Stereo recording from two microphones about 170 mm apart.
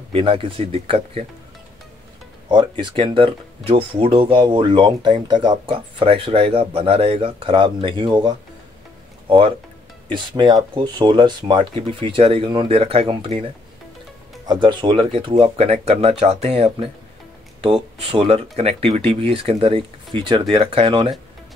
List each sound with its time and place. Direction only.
0.1 s speech: 30° right (ahead or behind)
2.5 s speech: 30° right (ahead or behind)
10.0 s speech: 25° right (ahead or behind)
14.4 s speech: 25° right (ahead or behind)
18.1 s speech: 35° right (ahead or behind)